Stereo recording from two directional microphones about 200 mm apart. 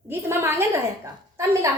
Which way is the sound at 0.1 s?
10° right (ahead or behind).